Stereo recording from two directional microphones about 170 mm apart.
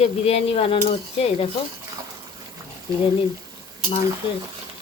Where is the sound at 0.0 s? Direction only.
35° left (ahead or behind).